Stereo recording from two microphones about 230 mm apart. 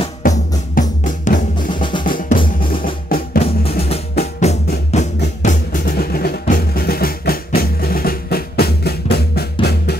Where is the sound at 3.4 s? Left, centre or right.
Left.